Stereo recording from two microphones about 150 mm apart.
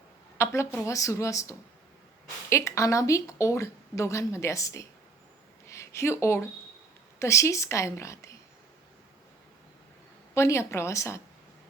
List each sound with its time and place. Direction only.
0.3 s a woman's voice: 20° left (ahead or behind)
5.6 s a sound: 20° left (ahead or behind)
7.2 s a woman's voice: 20° left (ahead or behind)
10.3 s a woman's voice: 20° left (ahead or behind)